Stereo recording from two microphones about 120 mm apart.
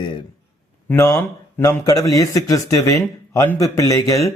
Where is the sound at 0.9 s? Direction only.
25° left (ahead or behind).